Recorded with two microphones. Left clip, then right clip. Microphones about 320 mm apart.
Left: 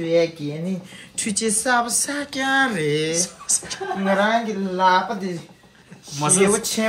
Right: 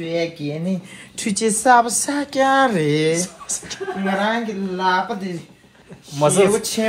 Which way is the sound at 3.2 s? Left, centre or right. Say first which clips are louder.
Left 2 dB; centre.